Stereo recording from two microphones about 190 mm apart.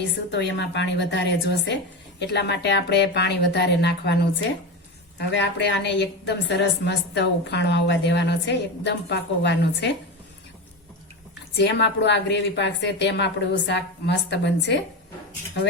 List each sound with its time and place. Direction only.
0.3 s a woman's voice: 65° left (ahead or behind)
11.5 s a woman's voice: 65° left (ahead or behind)